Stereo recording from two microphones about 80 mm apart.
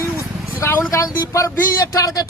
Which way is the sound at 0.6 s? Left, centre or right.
Left.